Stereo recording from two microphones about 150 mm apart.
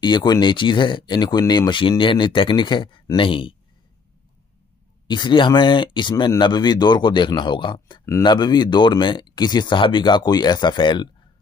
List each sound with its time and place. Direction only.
0.0 s speech: 30° left (ahead or behind)
5.0 s speech: 30° left (ahead or behind)